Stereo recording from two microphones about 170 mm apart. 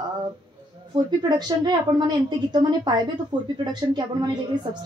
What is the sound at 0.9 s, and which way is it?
Speech, 25° right (ahead or behind).